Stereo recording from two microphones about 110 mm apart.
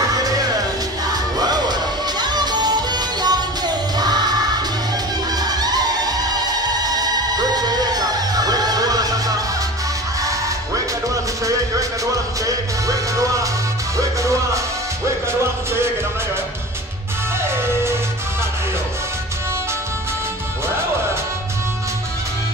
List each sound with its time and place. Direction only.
1.1 s music: 35° right (ahead or behind)
5.4 s music: 35° right (ahead or behind)
12.4 s music: 30° right (ahead or behind)